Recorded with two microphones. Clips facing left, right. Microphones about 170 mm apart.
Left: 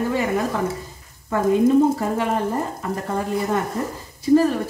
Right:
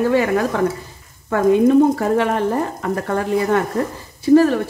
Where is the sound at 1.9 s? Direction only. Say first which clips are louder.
Right 4 dB; 75° right (ahead or behind).